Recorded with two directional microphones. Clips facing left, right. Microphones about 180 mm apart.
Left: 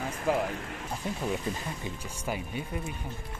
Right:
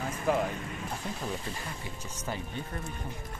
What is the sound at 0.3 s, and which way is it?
Speech, 10° left (ahead or behind).